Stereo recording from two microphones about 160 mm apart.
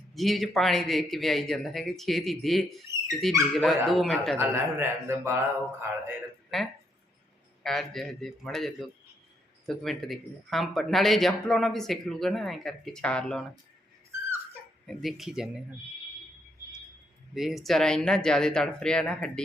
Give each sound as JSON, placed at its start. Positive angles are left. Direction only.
{"t": 0.1, "sound": "speech", "side_deg": 0}
{"t": 4.4, "sound": "a man's voice", "side_deg": -15}
{"t": 6.5, "sound": "speech", "side_deg": 0}
{"t": 14.8, "sound": "speech", "side_deg": 0}
{"t": 17.3, "sound": "speech", "side_deg": 0}